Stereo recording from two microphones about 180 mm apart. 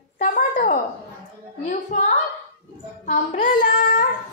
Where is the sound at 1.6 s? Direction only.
40° left (ahead or behind).